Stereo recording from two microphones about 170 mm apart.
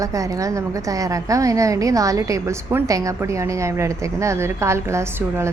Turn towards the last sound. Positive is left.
turn(degrees=-15)  # may be behind; listen again after turning